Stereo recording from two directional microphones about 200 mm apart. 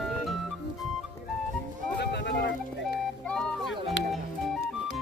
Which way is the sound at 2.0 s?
60° left (ahead or behind).